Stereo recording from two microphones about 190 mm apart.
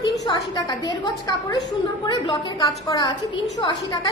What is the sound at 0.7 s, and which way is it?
A woman's voice, 20° left (ahead or behind).